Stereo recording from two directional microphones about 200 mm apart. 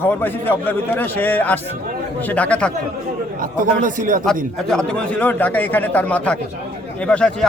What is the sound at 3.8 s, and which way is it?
Speech, 40° right (ahead or behind).